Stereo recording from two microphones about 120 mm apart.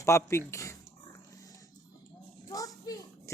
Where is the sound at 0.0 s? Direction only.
25° left (ahead or behind).